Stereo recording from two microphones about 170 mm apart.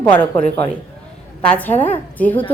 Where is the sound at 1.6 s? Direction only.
10° left (ahead or behind).